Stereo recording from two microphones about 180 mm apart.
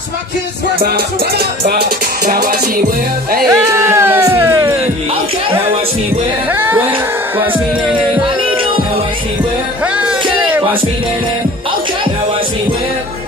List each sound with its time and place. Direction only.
0.7 s music: 60° right (ahead or behind)
3.4 s speech: 15° right (ahead or behind)
6.5 s music: 10° right (ahead or behind)
9.9 s music: 5° right (ahead or behind)